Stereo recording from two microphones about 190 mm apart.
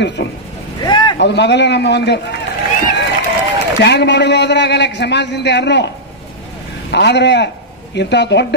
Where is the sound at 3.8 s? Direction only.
65° left (ahead or behind).